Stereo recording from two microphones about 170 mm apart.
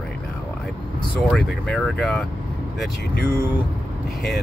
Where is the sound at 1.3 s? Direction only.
5° left (ahead or behind).